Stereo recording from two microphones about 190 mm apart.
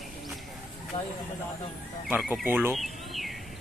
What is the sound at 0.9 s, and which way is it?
Speech, 30° left (ahead or behind).